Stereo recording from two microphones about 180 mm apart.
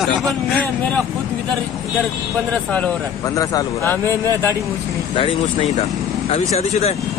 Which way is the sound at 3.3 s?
15° left (ahead or behind).